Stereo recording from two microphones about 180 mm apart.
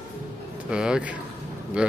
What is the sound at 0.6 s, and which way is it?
Speech, 5° right (ahead or behind).